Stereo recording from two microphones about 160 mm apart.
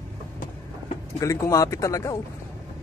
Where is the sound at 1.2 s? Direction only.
20° left (ahead or behind).